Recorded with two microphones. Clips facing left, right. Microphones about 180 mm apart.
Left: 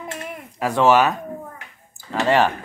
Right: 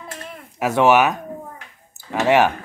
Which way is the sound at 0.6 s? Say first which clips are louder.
Right 1 dB; 10° right (ahead or behind).